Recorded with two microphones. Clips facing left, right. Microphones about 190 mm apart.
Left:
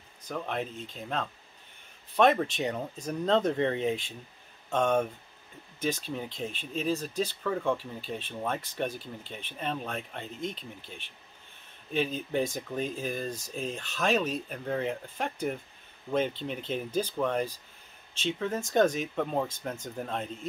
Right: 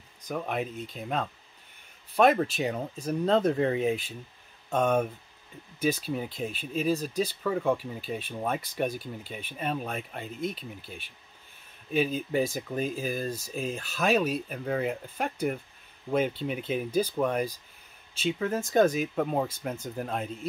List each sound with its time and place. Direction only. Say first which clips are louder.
0.3 s speech: right 2 dB; 10° right (ahead or behind)